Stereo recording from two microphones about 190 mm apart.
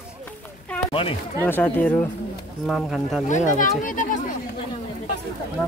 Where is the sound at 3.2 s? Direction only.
40° left (ahead or behind).